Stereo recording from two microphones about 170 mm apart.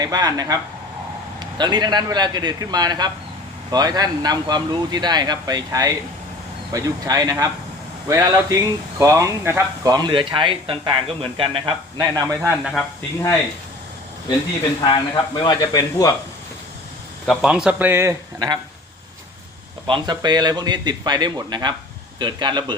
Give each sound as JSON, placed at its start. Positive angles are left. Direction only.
{"t": 0.0, "sound": "speech", "side_deg": -20}
{"t": 14.8, "sound": "speech", "side_deg": 25}
{"t": 17.2, "sound": "speech", "side_deg": -5}
{"t": 19.9, "sound": "speech", "side_deg": -25}